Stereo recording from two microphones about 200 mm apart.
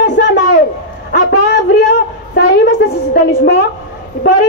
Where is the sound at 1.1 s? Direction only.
55° left (ahead or behind).